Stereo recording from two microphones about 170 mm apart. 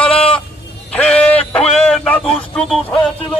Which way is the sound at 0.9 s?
5° left (ahead or behind).